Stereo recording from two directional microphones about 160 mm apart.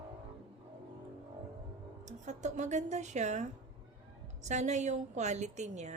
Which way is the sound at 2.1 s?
50° right (ahead or behind).